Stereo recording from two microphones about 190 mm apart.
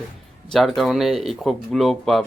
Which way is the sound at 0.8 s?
Centre (ahead or behind).